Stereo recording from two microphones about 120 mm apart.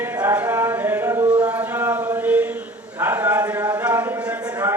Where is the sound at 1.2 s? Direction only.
10° right (ahead or behind).